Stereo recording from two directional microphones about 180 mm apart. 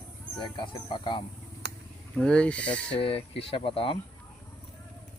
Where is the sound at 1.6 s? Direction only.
70° right (ahead or behind).